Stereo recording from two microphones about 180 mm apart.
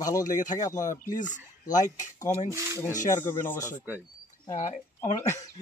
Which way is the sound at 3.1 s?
10° left (ahead or behind).